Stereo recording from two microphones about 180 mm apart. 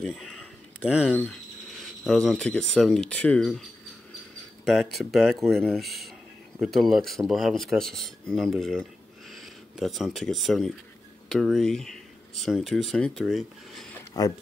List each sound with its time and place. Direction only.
0.0 s a sound: centre (ahead or behind)
2.0 s speech: 5° left (ahead or behind)
4.6 s speech: centre (ahead or behind)
14.2 s speech: 20° left (ahead or behind)